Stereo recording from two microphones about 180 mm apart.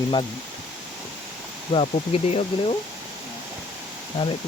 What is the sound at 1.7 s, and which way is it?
Speech, 35° left (ahead or behind).